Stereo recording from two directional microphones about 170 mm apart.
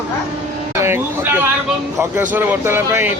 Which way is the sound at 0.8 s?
15° right (ahead or behind).